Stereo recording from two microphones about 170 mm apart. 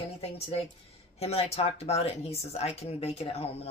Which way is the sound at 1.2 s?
35° left (ahead or behind).